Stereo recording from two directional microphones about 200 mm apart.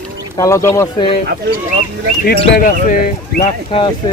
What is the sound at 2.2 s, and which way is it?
Speech, 45° left (ahead or behind).